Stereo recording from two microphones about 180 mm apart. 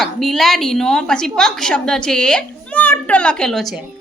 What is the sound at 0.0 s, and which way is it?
A woman's voice, centre (ahead or behind).